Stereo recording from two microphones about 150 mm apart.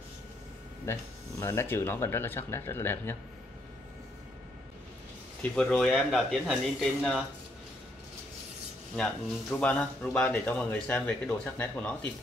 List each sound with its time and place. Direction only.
0.9 s speech: 15° left (ahead or behind)
5.4 s speech: 5° left (ahead or behind)
8.9 s speech: 10° left (ahead or behind)